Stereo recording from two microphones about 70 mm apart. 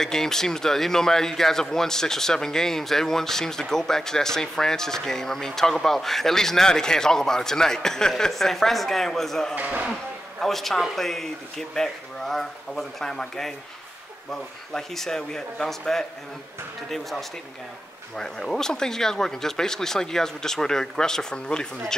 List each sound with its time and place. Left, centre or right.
0.0 s speech: centre
9.6 s speech: right
10.4 s speech: centre
18.1 s speech: centre